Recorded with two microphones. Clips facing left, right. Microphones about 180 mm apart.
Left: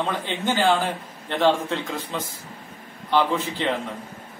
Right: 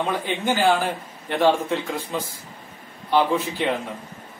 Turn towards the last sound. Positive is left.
turn(degrees=-10)  # may be behind; listen again after turning